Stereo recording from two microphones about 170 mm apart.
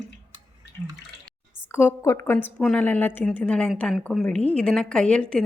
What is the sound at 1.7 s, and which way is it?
A woman's voice, 15° left (ahead or behind).